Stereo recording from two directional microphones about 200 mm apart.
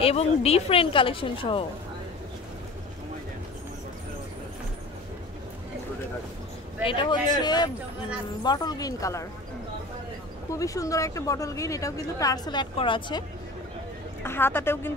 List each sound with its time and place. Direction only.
0.0 s a woman's voice: 30° left (ahead or behind)
6.8 s a woman's voice: 25° left (ahead or behind)
10.5 s a woman's voice: 15° left (ahead or behind)
14.2 s a woman's voice: 10° left (ahead or behind)